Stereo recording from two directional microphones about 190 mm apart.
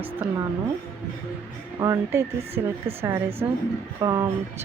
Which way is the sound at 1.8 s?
20° right (ahead or behind).